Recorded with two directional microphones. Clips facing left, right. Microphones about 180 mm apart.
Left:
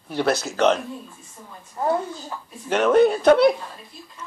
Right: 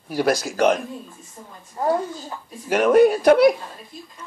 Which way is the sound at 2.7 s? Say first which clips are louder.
Right 2 dB; 10° right (ahead or behind).